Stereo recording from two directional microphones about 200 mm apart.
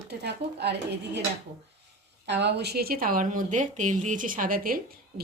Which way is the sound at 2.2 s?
60° right (ahead or behind).